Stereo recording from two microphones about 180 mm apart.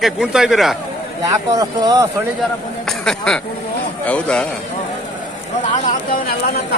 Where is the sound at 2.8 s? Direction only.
5° left (ahead or behind).